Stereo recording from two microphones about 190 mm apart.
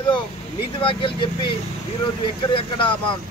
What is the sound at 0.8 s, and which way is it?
Speech, 25° left (ahead or behind).